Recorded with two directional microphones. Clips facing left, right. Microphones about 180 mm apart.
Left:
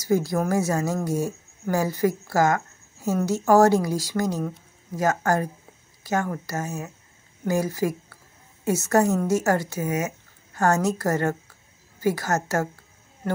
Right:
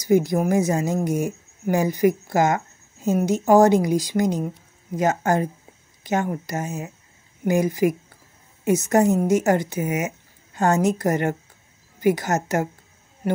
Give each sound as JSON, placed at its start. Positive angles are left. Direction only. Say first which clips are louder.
{"t": 0.0, "sound": "a woman's voice", "louder": "right 4 dB", "side_deg": -20}